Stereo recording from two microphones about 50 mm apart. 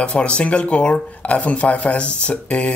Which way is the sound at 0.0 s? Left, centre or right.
Left.